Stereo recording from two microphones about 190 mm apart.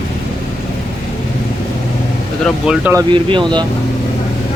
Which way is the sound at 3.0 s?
25° right (ahead or behind).